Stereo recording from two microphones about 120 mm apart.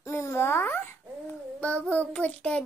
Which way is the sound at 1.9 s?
10° left (ahead or behind).